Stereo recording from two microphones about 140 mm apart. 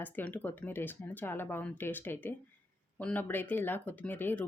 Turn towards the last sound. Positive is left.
turn(degrees=15)  # may be behind; listen again after turning